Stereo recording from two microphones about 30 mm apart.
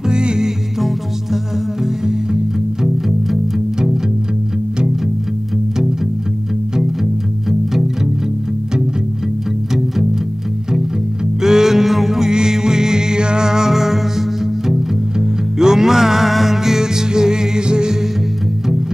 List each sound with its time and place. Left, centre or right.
0.1 s music: right
0.7 s music: centre
11.4 s music: centre